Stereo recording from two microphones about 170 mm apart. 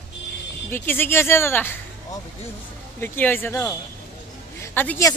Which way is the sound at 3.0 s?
10° left (ahead or behind).